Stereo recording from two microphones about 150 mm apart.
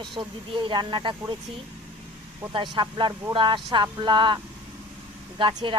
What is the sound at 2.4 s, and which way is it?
Speech, 15° right (ahead or behind).